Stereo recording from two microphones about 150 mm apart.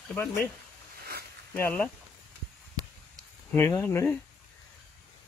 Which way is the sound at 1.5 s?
15° left (ahead or behind).